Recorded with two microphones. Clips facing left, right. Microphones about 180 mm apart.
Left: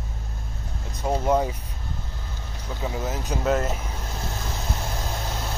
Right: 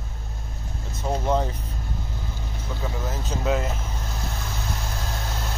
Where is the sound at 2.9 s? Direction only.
20° left (ahead or behind).